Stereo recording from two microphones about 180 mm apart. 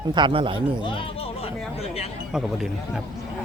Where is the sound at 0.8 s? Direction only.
30° left (ahead or behind).